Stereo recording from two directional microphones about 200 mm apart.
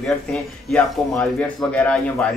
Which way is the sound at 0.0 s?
5° left (ahead or behind).